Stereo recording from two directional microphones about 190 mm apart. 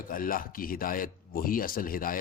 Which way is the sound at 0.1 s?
50° left (ahead or behind).